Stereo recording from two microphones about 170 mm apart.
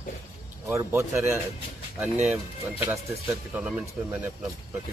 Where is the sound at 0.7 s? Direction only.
15° right (ahead or behind).